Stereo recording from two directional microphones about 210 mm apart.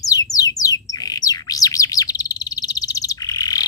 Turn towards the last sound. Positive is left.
turn(degrees=15)  # may be behind; listen again after turning